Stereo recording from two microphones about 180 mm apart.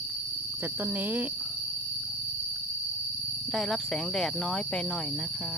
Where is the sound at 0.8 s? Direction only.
10° right (ahead or behind).